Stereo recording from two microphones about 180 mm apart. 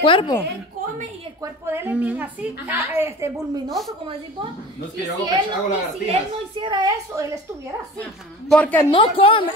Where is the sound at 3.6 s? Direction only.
Centre (ahead or behind).